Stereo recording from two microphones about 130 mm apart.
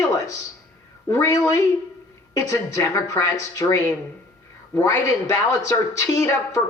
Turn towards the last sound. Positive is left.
turn(degrees=25)  # may be behind; listen again after turning